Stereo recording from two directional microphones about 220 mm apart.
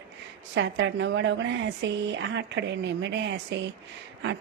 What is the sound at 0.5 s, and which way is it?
Speech, 55° right (ahead or behind).